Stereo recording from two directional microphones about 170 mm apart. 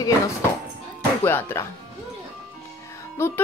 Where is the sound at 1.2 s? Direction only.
15° left (ahead or behind).